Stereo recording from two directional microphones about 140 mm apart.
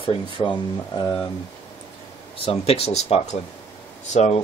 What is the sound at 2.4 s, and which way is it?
Speech, 45° left (ahead or behind).